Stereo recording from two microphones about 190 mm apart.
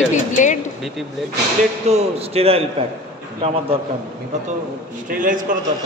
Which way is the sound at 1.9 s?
35° right (ahead or behind).